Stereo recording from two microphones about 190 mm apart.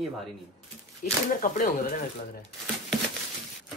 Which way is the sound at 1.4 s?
45° left (ahead or behind).